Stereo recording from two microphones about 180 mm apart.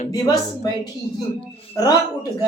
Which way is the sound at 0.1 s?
20° left (ahead or behind).